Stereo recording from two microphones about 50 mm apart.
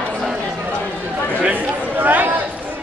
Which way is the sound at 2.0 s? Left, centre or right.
Right.